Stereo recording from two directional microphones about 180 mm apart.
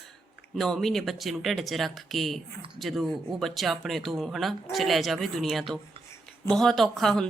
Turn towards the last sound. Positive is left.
turn(degrees=0)  # may be behind; listen again after turning